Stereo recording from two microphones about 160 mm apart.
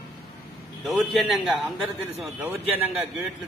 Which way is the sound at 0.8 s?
Centre (ahead or behind).